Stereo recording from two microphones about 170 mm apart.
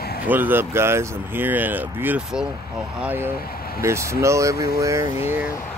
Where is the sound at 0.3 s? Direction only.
10° right (ahead or behind).